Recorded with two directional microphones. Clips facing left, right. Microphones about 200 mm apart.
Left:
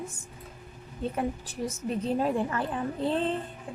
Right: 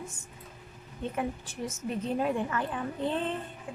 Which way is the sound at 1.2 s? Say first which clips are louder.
Left 2 dB; 35° left (ahead or behind).